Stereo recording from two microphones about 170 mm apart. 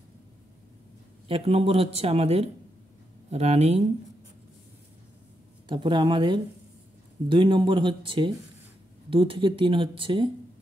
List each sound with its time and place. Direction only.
1.3 s speech: 35° right (ahead or behind)
5.7 s speech: 25° right (ahead or behind)